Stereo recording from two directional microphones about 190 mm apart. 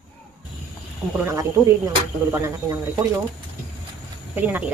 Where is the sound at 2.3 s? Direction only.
15° right (ahead or behind).